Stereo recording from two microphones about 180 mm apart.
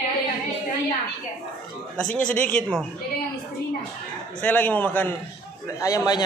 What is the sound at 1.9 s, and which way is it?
Speech, 5° left (ahead or behind).